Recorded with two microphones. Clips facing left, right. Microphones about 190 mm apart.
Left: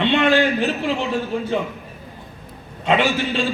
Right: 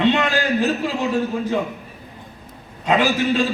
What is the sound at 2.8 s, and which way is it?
Speech, 25° left (ahead or behind).